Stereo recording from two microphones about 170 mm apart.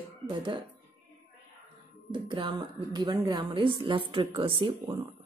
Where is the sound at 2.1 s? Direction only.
30° right (ahead or behind).